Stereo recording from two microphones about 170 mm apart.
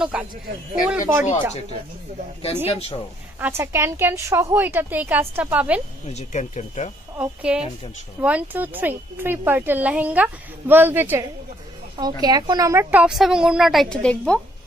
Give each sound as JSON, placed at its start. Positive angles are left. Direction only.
{"t": 0.0, "sound": "speech", "side_deg": -5}
{"t": 2.7, "sound": "speech", "side_deg": 35}
{"t": 3.3, "sound": "speech", "side_deg": -15}
{"t": 6.0, "sound": "speech", "side_deg": 40}
{"t": 7.2, "sound": "speech", "side_deg": -5}
{"t": 12.0, "sound": "a woman's voice", "side_deg": -25}
{"t": 12.9, "sound": "a woman's voice", "side_deg": -5}